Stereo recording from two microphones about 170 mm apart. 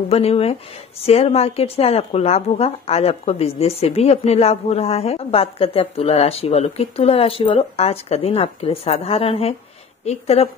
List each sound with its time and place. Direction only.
0.1 s speech: 35° left (ahead or behind)